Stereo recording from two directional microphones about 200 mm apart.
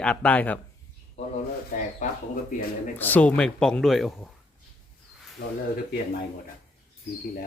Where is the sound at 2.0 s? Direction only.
40° left (ahead or behind).